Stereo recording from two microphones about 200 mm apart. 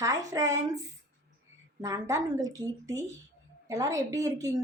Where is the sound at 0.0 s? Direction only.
15° right (ahead or behind).